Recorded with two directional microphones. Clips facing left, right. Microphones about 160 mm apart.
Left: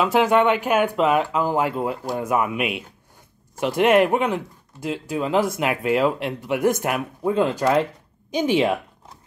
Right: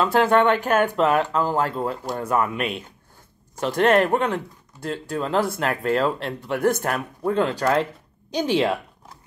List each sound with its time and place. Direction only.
0.0 s speech: 10° left (ahead or behind)